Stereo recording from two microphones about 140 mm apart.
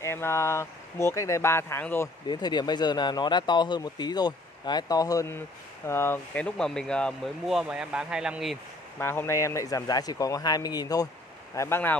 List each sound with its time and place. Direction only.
0.0 s speech: 20° left (ahead or behind)
2.2 s speech: 30° left (ahead or behind); by 8.5 s 5° right (ahead or behind)
8.9 s speech: 15° left (ahead or behind)